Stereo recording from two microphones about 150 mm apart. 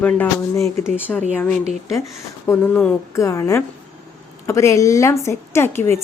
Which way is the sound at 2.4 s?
15° left (ahead or behind).